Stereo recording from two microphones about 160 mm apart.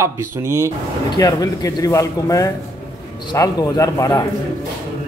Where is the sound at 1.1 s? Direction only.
20° left (ahead or behind).